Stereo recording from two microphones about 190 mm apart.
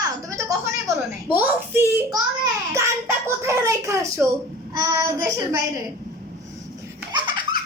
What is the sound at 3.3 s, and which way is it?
A child's voice, 15° right (ahead or behind).